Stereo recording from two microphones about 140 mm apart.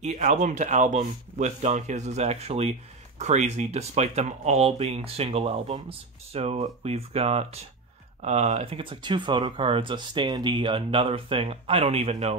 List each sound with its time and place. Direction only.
0.0 s speech: 60° right (ahead or behind)